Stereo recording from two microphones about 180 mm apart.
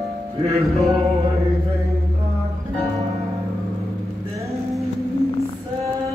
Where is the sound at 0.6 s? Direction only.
Centre (ahead or behind).